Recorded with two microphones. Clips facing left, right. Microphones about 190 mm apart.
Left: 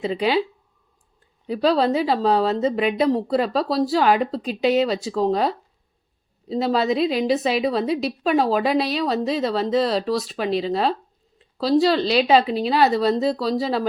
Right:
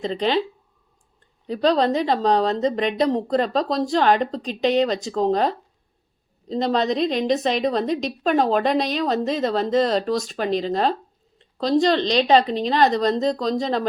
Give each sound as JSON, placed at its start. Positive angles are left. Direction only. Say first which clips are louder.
{"t": 0.0, "sound": "speech", "louder": "left 1 dB", "side_deg": 5}
{"t": 1.5, "sound": "a woman's voice", "louder": "even", "side_deg": 5}